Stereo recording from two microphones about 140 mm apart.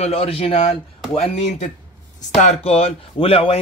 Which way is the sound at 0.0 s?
45° left (ahead or behind).